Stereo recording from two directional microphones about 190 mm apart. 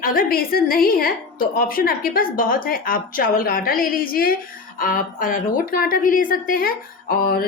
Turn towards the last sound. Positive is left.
turn(degrees=50)  # may be behind; listen again after turning